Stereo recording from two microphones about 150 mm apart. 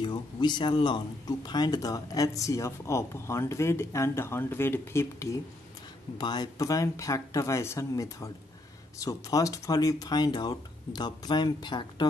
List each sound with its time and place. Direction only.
0.0 s a man's voice: 30° left (ahead or behind)